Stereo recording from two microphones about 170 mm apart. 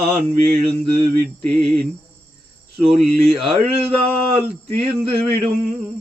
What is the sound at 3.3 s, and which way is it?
Speech, centre (ahead or behind).